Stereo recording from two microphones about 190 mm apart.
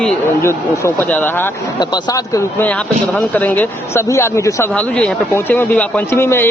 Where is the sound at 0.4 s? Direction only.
10° left (ahead or behind).